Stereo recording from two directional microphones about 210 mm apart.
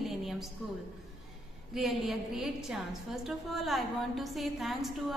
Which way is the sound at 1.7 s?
Centre (ahead or behind).